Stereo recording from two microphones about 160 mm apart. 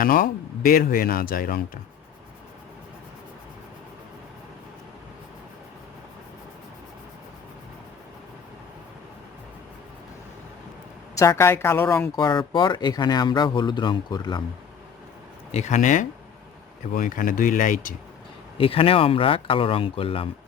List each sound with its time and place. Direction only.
0.0 s speech: 60° left (ahead or behind)
11.2 s speech: 20° left (ahead or behind)
12.1 s speech: 30° left (ahead or behind)
15.5 s speech: 50° left (ahead or behind)
18.5 s speech: 35° left (ahead or behind)